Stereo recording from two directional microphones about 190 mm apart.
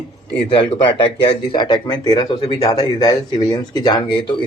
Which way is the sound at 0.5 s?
25° left (ahead or behind).